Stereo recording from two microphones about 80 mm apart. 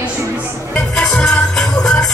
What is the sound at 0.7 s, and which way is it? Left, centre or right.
Music, centre.